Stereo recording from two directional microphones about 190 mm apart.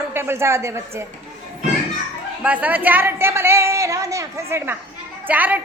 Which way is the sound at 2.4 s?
10° right (ahead or behind).